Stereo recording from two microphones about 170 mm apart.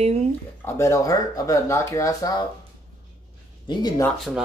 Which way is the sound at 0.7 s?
15° left (ahead or behind).